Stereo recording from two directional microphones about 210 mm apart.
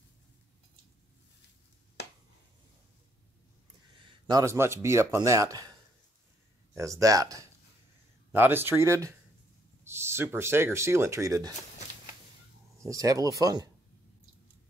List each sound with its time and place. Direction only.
4.3 s speech: 15° right (ahead or behind)
12.8 s speech: 15° right (ahead or behind)